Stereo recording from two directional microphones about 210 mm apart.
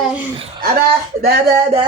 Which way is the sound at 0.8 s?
45° right (ahead or behind).